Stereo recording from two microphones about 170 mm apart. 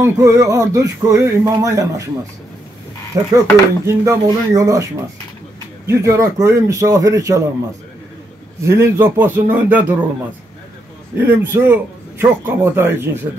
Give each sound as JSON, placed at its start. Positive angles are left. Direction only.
{"t": 0.0, "sound": "speech", "side_deg": -15}
{"t": 3.3, "sound": "speech", "side_deg": -15}
{"t": 5.9, "sound": "speech", "side_deg": -15}
{"t": 8.6, "sound": "a man's voice", "side_deg": -15}
{"t": 11.1, "sound": "a man's voice", "side_deg": -10}